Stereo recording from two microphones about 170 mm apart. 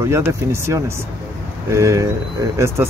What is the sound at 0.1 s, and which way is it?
Speech, 15° right (ahead or behind).